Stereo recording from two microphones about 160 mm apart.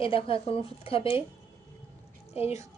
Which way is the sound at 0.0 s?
35° left (ahead or behind).